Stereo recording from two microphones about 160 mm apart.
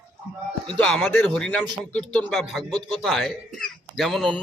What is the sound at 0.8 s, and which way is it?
A man's voice, 5° left (ahead or behind).